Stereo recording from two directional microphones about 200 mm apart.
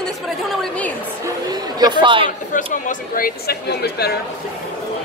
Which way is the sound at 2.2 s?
40° left (ahead or behind).